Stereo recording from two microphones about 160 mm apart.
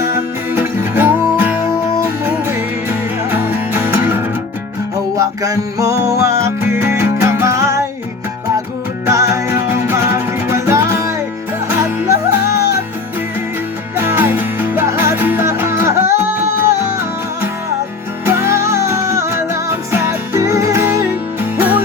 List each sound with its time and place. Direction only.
0.5 s music: 15° right (ahead or behind)
2.9 s music: 15° right (ahead or behind)
9.0 s music: 15° right (ahead or behind)
13.9 s music: 15° right (ahead or behind)
18.3 s music: 15° right (ahead or behind)